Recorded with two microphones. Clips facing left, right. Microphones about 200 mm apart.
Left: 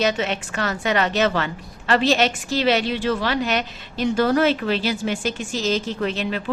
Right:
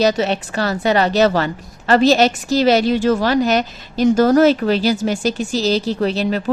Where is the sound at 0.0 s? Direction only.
35° right (ahead or behind).